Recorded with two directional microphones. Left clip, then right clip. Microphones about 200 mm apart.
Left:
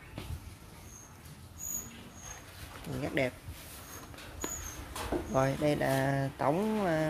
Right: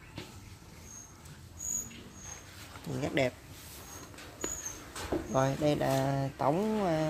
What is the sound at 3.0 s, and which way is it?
Speech, 20° right (ahead or behind).